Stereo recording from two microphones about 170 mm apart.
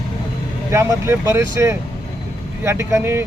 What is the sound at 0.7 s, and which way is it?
A man's voice, 15° right (ahead or behind).